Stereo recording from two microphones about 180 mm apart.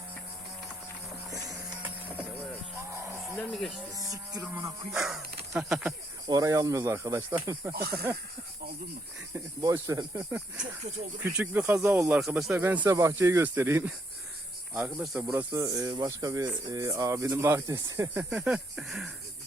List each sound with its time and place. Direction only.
3.2 s speech: centre (ahead or behind)
3.9 s speech: 20° right (ahead or behind)
4.9 s speech: centre (ahead or behind)
6.2 s speech: 20° right (ahead or behind)
7.7 s speech: 55° right (ahead or behind)
9.3 s speech: 15° right (ahead or behind)
11.2 s speech: 10° right (ahead or behind)
15.3 s speech: 15° right (ahead or behind)